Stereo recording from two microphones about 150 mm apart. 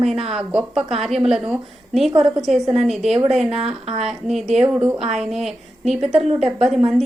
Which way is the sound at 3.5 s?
45° right (ahead or behind).